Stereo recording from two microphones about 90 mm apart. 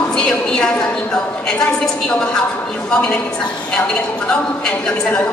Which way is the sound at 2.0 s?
10° left (ahead or behind).